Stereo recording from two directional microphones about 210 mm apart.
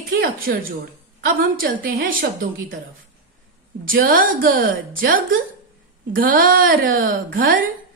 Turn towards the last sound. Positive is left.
turn(degrees=-40)  # may be behind; listen again after turning